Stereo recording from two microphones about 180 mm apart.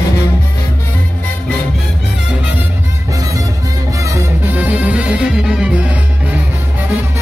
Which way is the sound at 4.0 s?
15° right (ahead or behind).